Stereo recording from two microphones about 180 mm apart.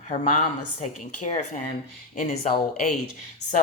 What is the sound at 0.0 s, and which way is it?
Speech, 45° left (ahead or behind).